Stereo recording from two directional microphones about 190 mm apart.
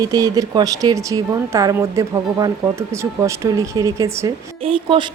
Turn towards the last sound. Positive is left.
turn(degrees=-25)  # may be behind; listen again after turning